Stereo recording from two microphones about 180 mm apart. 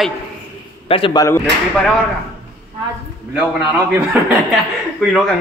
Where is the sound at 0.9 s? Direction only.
25° left (ahead or behind).